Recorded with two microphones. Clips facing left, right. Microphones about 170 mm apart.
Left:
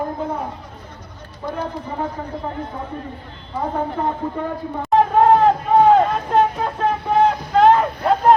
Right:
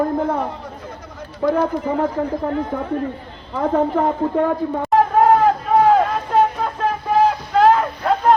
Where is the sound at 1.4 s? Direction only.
90° right.